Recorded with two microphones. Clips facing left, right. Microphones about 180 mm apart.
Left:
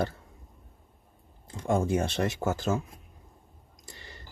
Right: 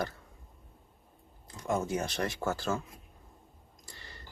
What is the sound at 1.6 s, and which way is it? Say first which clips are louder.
Speech: left 5 dB; 25° left (ahead or behind).